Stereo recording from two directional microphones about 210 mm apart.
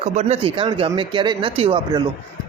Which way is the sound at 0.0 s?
30° right (ahead or behind).